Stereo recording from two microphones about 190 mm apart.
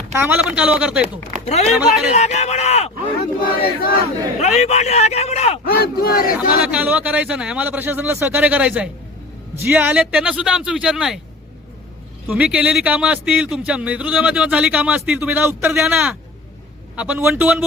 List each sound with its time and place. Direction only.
0.1 s a man's voice: 10° right (ahead or behind)
1.5 s speech: 35° left (ahead or behind)
1.7 s speech: centre (ahead or behind)
2.1 s speech: 35° left (ahead or behind)
4.4 s a man's voice: 35° left (ahead or behind)
5.6 s speech: 50° left (ahead or behind)
6.3 s a man's voice: 5° right (ahead or behind)
12.3 s a man's voice: 5° right (ahead or behind)